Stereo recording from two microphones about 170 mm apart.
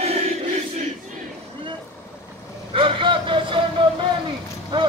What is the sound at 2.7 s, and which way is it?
Vehicle, 30° right (ahead or behind).